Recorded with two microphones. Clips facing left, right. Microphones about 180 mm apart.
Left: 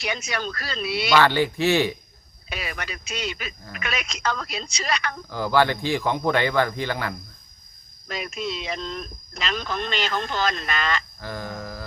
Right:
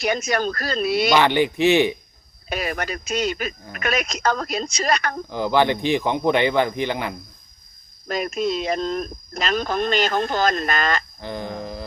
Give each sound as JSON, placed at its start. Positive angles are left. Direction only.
{"t": 0.0, "sound": "speech", "side_deg": -45}
{"t": 1.1, "sound": "speech", "side_deg": -20}
{"t": 2.5, "sound": "speech", "side_deg": -45}
{"t": 5.3, "sound": "speech", "side_deg": -20}
{"t": 8.0, "sound": "speech", "side_deg": -45}
{"t": 11.2, "sound": "speech", "side_deg": -20}